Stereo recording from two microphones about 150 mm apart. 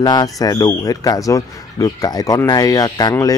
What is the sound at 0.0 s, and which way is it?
A man's voice, 25° left (ahead or behind).